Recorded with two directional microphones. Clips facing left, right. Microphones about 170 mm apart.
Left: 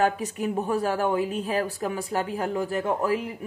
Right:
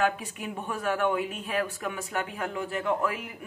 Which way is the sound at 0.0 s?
40° left (ahead or behind).